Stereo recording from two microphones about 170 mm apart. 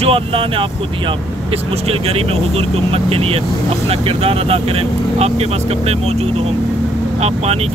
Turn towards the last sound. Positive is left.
turn(degrees=-40)  # may be behind; listen again after turning